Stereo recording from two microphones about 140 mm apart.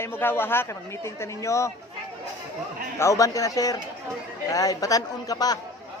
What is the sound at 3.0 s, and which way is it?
A man's voice, 20° left (ahead or behind).